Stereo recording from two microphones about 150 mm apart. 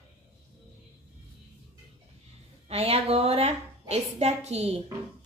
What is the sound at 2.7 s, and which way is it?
A woman's voice, 40° right (ahead or behind).